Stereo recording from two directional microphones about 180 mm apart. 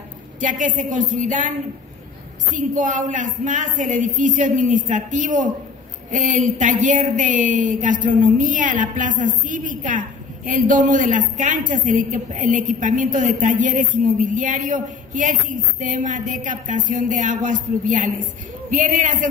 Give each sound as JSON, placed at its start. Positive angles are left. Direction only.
{"t": 0.4, "sound": "a woman's voice", "side_deg": -45}
{"t": 2.5, "sound": "a woman's voice", "side_deg": -45}